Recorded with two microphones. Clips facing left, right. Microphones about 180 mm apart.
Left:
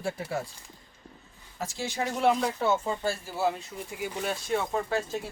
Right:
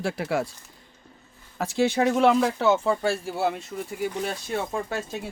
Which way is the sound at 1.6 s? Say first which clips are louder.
Right 10 dB; 65° right (ahead or behind).